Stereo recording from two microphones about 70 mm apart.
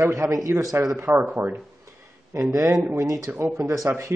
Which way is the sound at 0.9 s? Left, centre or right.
Right.